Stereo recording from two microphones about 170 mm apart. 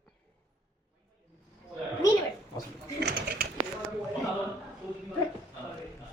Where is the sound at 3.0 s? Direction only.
75° right (ahead or behind).